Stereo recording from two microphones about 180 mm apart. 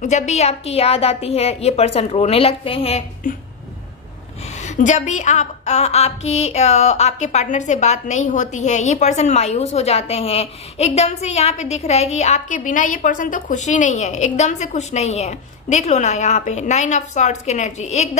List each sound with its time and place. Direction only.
0.0 s a woman's voice: 40° left (ahead or behind)
4.6 s a woman's voice: 40° left (ahead or behind)